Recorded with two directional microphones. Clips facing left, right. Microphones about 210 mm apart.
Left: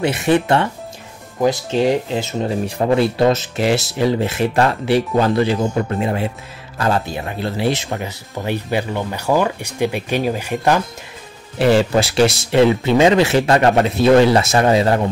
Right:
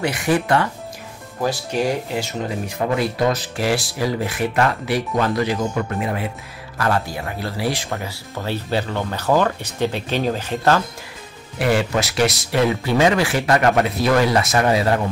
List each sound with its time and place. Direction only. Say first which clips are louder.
0.0 s speech: left 4 dB; 25° left (ahead or behind)
11.5 s speech: left 5 dB; 30° left (ahead or behind)